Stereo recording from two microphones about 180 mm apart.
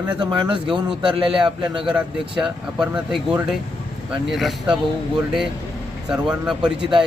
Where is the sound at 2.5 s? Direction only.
5° right (ahead or behind).